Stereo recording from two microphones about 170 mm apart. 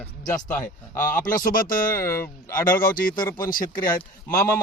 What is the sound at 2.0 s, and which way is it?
Speech, 15° left (ahead or behind).